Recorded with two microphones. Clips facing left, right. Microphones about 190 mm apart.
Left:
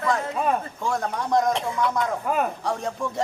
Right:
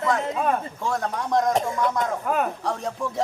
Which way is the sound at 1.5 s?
45° right (ahead or behind).